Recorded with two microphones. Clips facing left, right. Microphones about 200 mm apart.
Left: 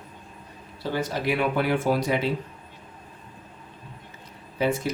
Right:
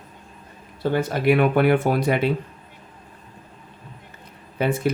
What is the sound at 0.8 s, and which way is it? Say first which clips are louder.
Speech: right 7 dB; 55° right (ahead or behind).